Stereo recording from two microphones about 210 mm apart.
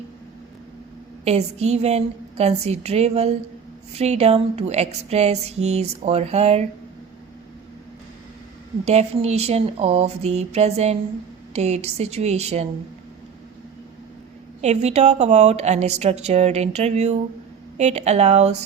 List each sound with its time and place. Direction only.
1.2 s speech: 30° right (ahead or behind)
8.8 s speech: 30° right (ahead or behind)
14.6 s speech: 30° right (ahead or behind)